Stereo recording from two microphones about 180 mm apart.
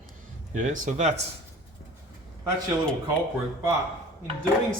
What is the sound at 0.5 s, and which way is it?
Speech, 45° right (ahead or behind).